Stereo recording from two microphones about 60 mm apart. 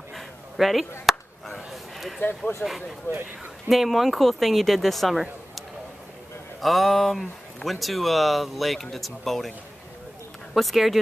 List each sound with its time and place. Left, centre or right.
0.1 s a sound: centre
2.1 s speech: left
3.1 s speech: left
3.6 s speech: centre
6.6 s speech: centre
10.5 s speech: centre